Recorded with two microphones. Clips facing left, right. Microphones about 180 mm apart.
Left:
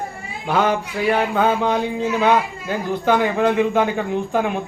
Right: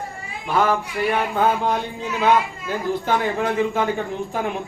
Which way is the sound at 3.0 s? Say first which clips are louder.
Left 7 dB; 70° left (ahead or behind).